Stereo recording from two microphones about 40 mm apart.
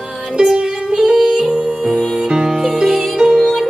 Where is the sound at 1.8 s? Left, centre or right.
Centre.